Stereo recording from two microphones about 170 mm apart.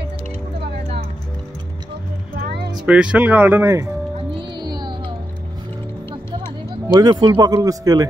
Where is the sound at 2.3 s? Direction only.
70° right (ahead or behind).